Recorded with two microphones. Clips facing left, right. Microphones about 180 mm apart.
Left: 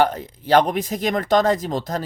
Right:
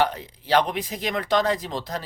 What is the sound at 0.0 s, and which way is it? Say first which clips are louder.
Speech: left 4 dB; 45° left (ahead or behind).